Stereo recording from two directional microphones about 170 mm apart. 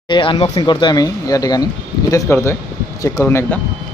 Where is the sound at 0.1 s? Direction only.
30° left (ahead or behind); by 3.5 s 15° left (ahead or behind).